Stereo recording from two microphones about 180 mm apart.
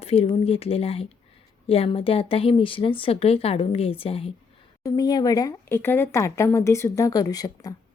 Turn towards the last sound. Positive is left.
turn(degrees=20)  # may be behind; listen again after turning